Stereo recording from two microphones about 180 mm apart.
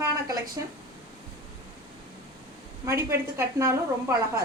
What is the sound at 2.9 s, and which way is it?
Speech, 15° right (ahead or behind).